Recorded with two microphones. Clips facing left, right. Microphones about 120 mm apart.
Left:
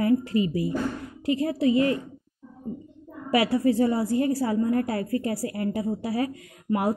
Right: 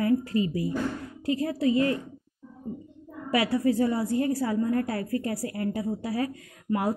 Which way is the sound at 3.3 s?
25° left (ahead or behind).